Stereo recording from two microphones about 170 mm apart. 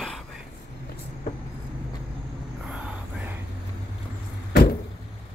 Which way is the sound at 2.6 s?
Centre (ahead or behind).